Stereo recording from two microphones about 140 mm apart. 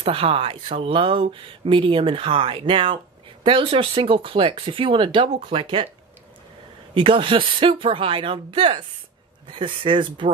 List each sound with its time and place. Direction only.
0.0 s speech: 40° right (ahead or behind)
6.9 s speech: 40° right (ahead or behind)